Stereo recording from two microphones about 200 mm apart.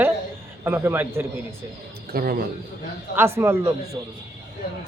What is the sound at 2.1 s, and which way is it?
Speech, 45° right (ahead or behind).